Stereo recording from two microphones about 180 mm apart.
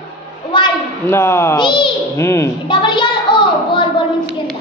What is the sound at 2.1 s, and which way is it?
Speech, 15° left (ahead or behind).